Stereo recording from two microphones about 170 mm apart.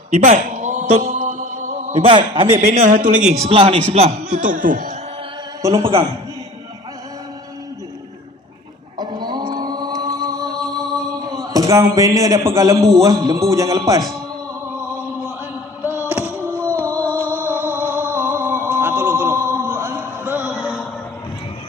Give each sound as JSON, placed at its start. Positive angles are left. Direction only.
{"t": 0.1, "sound": "mantra", "side_deg": -45}
{"t": 2.0, "sound": "a man's voice", "side_deg": -30}
{"t": 3.4, "sound": "a man's voice", "side_deg": -30}
{"t": 5.7, "sound": "a man's voice", "side_deg": -35}
{"t": 8.9, "sound": "a sound", "side_deg": -25}
{"t": 11.4, "sound": "a man's voice", "side_deg": -20}
{"t": 16.9, "sound": "music", "side_deg": 10}
{"t": 17.5, "sound": "music", "side_deg": -10}